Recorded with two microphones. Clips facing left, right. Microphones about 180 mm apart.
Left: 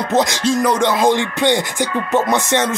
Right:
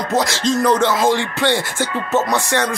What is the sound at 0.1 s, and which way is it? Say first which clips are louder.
Music: left 2 dB; 20° left (ahead or behind).